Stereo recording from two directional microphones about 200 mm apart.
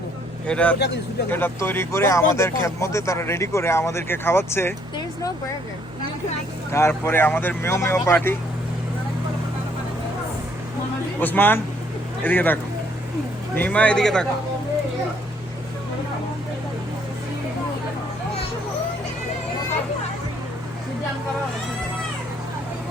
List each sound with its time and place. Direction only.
0.4 s speech: 5° left (ahead or behind)
6.7 s speech: 15° left (ahead or behind)
11.2 s speech: 10° left (ahead or behind)
13.6 s speech: 5° left (ahead or behind)